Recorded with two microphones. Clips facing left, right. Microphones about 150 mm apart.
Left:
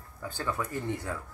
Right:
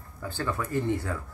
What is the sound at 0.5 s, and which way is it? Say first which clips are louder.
Speech: right 5 dB; 20° left (ahead or behind).